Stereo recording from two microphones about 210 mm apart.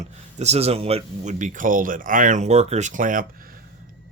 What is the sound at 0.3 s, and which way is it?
Speech, 30° right (ahead or behind).